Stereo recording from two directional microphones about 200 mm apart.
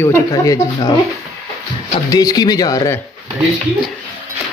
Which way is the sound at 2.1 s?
20° left (ahead or behind).